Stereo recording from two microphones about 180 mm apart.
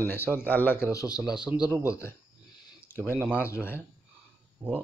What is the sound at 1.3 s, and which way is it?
Speech, 5° right (ahead or behind).